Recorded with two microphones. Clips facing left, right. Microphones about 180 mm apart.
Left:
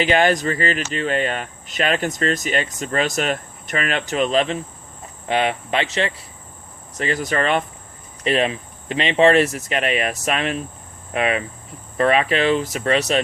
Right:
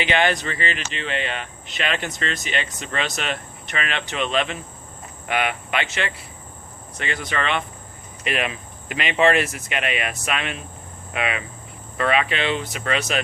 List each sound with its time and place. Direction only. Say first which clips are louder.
0.0 s speech: left 4 dB; 40° left (ahead or behind)
8.2 s speech: left 6 dB; 30° left (ahead or behind)